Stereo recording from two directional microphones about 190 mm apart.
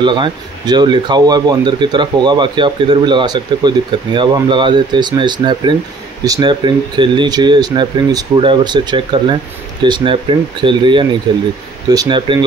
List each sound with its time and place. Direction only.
0.0 s speech: 25° right (ahead or behind)